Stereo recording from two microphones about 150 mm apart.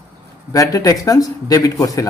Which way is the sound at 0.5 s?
20° left (ahead or behind).